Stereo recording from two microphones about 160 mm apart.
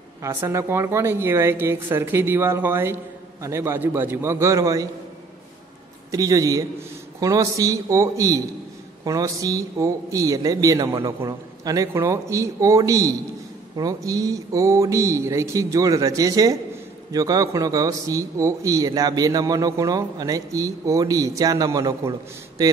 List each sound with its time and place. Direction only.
0.2 s speech: 20° right (ahead or behind)
6.1 s a man's voice: 20° right (ahead or behind)